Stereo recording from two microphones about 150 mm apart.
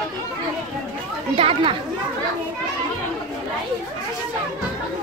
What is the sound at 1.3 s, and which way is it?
Speech, 40° right (ahead or behind).